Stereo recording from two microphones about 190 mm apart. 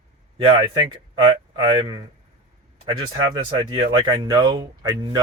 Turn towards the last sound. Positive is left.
turn(degrees=-20)  # may be behind; listen again after turning